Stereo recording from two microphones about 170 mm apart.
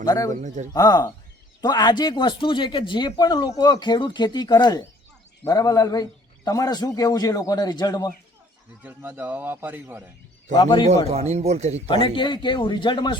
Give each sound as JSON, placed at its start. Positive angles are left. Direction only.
{"t": 0.0, "sound": "a man's voice", "side_deg": 20}
{"t": 0.4, "sound": "speech", "side_deg": -45}
{"t": 0.7, "sound": "a man's voice", "side_deg": 25}
{"t": 8.8, "sound": "a man's voice", "side_deg": -10}
{"t": 10.5, "sound": "a man's voice", "side_deg": 25}
{"t": 10.8, "sound": "a man's voice", "side_deg": -40}
{"t": 11.9, "sound": "a man's voice", "side_deg": 30}